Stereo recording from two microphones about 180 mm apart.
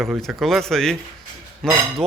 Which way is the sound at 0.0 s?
Centre (ahead or behind).